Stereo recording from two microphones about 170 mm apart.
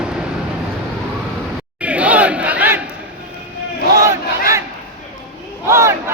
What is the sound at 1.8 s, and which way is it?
Battle cry, 5° right (ahead or behind).